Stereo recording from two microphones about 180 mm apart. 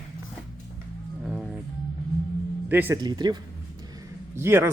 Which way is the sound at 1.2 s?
5° right (ahead or behind).